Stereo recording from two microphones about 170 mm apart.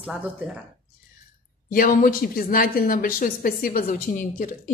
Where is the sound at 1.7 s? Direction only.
55° left (ahead or behind).